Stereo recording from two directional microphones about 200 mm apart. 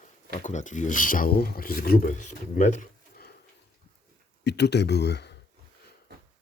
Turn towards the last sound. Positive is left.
turn(degrees=55)  # may be behind; listen again after turning